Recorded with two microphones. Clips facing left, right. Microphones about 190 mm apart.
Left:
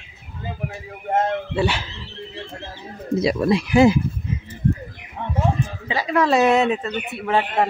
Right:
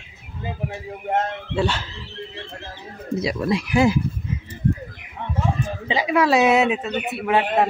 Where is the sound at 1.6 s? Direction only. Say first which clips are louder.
Right 1 dB; 10° left (ahead or behind).